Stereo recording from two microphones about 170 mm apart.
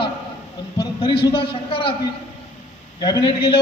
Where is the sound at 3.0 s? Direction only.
25° left (ahead or behind).